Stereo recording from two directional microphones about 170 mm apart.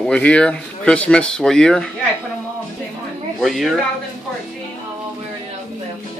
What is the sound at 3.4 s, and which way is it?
Speech, centre (ahead or behind).